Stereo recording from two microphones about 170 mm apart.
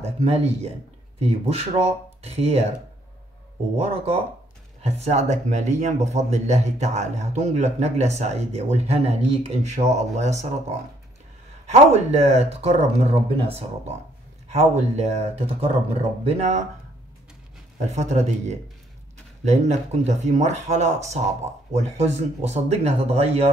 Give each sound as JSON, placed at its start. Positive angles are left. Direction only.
{"t": 0.0, "sound": "speech", "side_deg": -40}
{"t": 3.8, "sound": "speech", "side_deg": -35}
{"t": 11.6, "sound": "speech", "side_deg": -40}
{"t": 14.5, "sound": "speech", "side_deg": -40}
{"t": 17.7, "sound": "speech", "side_deg": -45}